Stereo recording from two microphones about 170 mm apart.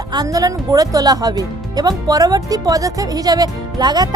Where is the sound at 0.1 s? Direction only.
20° right (ahead or behind).